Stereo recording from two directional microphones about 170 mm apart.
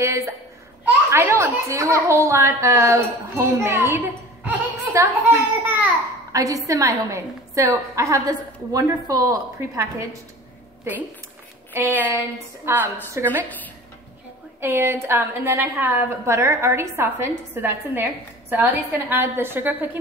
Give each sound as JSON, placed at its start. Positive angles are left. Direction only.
{"t": 0.0, "sound": "a woman's voice", "side_deg": -15}
{"t": 11.7, "sound": "a woman's voice", "side_deg": -10}
{"t": 14.6, "sound": "a woman's voice", "side_deg": -15}